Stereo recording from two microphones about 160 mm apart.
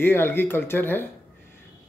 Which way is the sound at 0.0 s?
15° left (ahead or behind).